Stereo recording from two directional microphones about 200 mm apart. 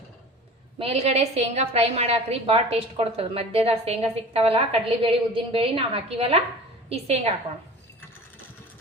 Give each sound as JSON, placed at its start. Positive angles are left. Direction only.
{"t": 0.8, "sound": "a woman's voice", "side_deg": -30}